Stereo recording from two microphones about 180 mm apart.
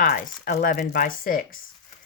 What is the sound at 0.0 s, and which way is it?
Speech, 50° left (ahead or behind).